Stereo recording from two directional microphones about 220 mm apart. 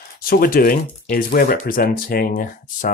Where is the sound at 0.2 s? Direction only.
40° left (ahead or behind).